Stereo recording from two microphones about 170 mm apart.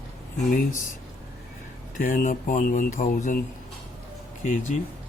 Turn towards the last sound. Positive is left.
turn(degrees=50)  # may be behind; listen again after turning